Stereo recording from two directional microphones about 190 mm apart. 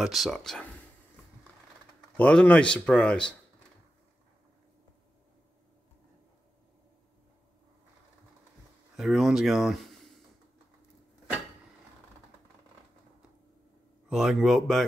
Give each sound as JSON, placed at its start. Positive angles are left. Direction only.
{"t": 0.0, "sound": "speech", "side_deg": 0}
{"t": 2.1, "sound": "speech", "side_deg": 5}
{"t": 8.9, "sound": "speech", "side_deg": 0}
{"t": 14.0, "sound": "speech", "side_deg": -5}